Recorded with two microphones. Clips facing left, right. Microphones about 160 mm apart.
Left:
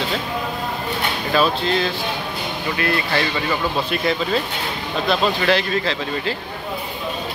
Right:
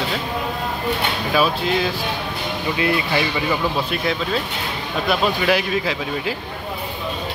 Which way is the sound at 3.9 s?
Centre (ahead or behind).